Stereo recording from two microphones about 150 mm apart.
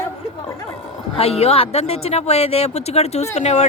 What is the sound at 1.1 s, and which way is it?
Speech, 40° left (ahead or behind).